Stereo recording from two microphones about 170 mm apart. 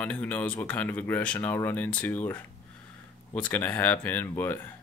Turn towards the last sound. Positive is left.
turn(degrees=10)  # may be behind; listen again after turning